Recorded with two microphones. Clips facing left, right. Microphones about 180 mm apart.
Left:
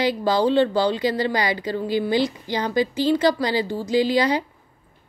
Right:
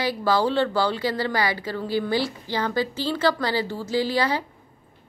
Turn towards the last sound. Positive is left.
turn(degrees=15)  # may be behind; listen again after turning